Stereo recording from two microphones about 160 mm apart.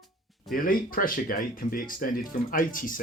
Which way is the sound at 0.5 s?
60° left (ahead or behind).